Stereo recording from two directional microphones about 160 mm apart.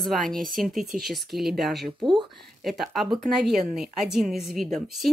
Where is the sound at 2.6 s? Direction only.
Centre (ahead or behind).